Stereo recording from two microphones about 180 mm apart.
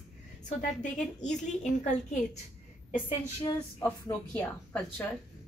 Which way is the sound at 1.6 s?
40° left (ahead or behind).